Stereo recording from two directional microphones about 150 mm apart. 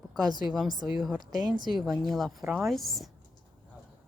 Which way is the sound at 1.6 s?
Centre (ahead or behind).